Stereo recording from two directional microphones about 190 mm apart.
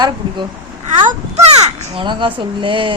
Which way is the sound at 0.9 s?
40° right (ahead or behind).